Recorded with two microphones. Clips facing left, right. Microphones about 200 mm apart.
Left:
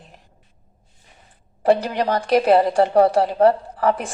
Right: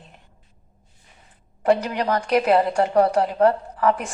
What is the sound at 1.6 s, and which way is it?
A woman's voice, 30° left (ahead or behind).